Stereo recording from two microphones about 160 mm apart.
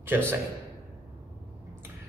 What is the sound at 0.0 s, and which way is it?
Speech, 15° right (ahead or behind).